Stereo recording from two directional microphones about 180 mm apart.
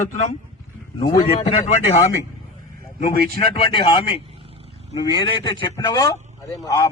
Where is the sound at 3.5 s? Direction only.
25° left (ahead or behind).